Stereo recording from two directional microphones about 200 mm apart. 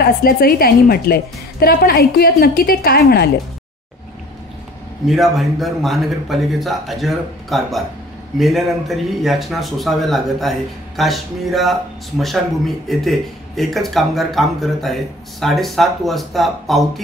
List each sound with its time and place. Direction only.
0.2 s a woman's voice: 45° left (ahead or behind)
5.0 s speech: centre (ahead or behind)